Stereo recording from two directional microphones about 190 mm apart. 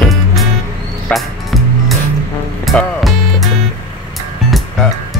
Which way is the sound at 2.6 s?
Centre (ahead or behind).